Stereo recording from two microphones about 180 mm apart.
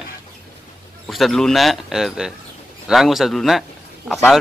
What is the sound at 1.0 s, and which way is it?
A man's voice, centre (ahead or behind).